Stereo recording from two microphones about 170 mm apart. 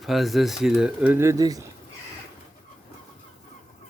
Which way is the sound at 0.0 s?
Centre (ahead or behind).